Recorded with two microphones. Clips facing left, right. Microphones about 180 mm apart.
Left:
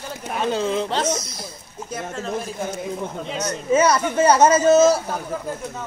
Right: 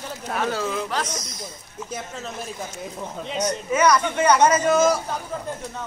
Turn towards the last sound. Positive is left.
turn(degrees=25)  # may be behind; listen again after turning